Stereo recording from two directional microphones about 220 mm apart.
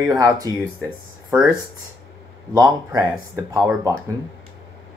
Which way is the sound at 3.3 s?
15° right (ahead or behind).